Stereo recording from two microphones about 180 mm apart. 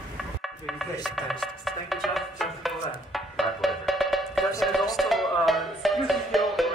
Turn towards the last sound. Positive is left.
turn(degrees=0)  # may be behind; listen again after turning